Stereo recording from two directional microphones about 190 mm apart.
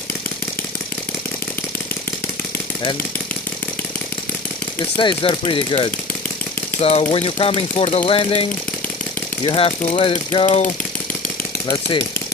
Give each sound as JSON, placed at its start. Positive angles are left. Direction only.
{"t": 4.9, "sound": "speech", "side_deg": 25}
{"t": 10.4, "sound": "speech", "side_deg": 40}
{"t": 11.6, "sound": "speech", "side_deg": 25}